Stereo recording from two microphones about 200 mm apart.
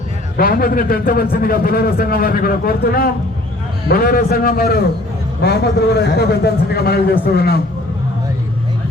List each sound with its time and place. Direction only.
0.3 s a man's voice: 45° left (ahead or behind)